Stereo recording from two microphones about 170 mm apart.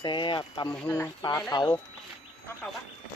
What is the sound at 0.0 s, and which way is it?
Speech, 30° left (ahead or behind).